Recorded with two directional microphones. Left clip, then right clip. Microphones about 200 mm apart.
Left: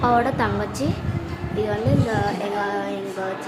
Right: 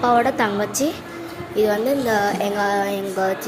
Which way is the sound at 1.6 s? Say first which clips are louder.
Right 5 dB; 20° right (ahead or behind).